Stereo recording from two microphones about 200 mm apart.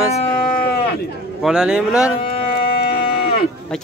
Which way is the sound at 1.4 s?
5° right (ahead or behind).